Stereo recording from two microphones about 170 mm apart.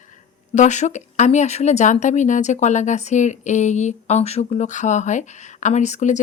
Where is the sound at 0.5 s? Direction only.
45° left (ahead or behind).